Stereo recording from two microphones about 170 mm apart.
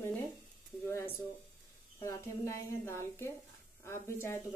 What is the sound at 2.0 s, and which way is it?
A woman's voice, 15° left (ahead or behind).